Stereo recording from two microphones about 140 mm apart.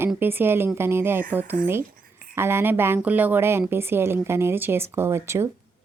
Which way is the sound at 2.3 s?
15° right (ahead or behind).